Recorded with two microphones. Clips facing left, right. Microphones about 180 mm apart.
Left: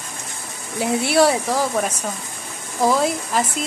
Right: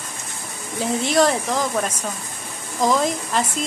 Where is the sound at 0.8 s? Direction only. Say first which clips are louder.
Left 2 dB; 10° left (ahead or behind).